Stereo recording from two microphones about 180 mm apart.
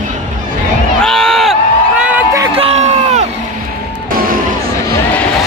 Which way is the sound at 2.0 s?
10° right (ahead or behind).